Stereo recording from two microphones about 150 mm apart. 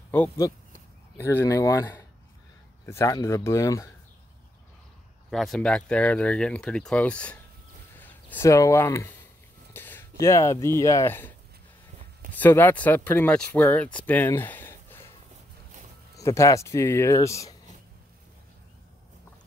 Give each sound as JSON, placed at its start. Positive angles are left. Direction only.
{"t": 0.4, "sound": "speech", "side_deg": 25}
{"t": 5.3, "sound": "speech", "side_deg": 0}
{"t": 9.8, "sound": "a sound", "side_deg": 15}
{"t": 10.2, "sound": "speech", "side_deg": 20}
{"t": 12.4, "sound": "speech", "side_deg": 10}
{"t": 16.2, "sound": "speech", "side_deg": 20}